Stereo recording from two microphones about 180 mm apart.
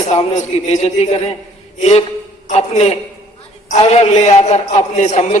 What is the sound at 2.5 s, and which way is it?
A man's voice, 35° left (ahead or behind).